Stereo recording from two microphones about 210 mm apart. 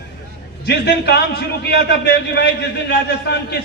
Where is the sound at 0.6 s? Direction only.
50° left (ahead or behind).